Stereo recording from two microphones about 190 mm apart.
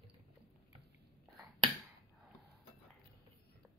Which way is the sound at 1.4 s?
25° right (ahead or behind).